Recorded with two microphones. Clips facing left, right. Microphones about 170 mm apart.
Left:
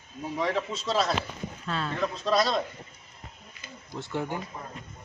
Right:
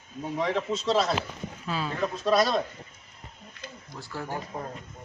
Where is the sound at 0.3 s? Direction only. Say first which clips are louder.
Right 1 dB; centre (ahead or behind).